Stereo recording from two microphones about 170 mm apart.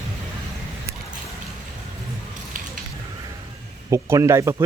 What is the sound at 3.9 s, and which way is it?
Speech, 15° right (ahead or behind).